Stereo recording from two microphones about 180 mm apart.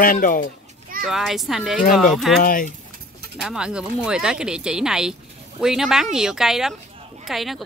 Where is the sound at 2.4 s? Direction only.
50° left (ahead or behind).